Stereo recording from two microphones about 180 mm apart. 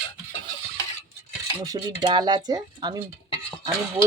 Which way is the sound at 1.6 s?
25° right (ahead or behind).